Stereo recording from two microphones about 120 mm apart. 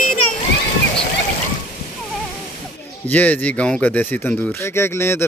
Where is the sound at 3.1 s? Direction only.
15° left (ahead or behind).